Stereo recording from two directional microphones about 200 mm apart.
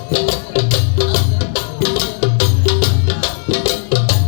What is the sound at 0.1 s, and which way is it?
Music, 35° left (ahead or behind).